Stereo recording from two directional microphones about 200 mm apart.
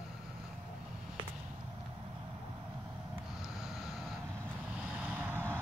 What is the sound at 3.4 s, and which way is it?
Snort, centre (ahead or behind).